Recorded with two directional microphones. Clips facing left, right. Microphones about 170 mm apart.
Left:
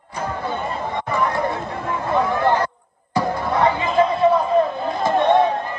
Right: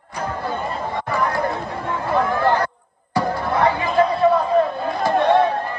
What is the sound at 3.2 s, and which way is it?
Music, centre (ahead or behind).